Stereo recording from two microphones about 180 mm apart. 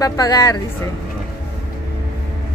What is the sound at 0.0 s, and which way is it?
Speech, 20° left (ahead or behind).